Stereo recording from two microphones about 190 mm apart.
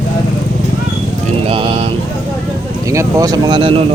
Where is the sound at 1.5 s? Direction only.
30° right (ahead or behind).